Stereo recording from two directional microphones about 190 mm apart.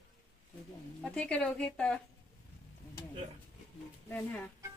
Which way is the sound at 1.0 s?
5° left (ahead or behind).